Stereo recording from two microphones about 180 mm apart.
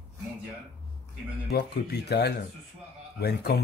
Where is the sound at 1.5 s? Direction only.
65° left (ahead or behind).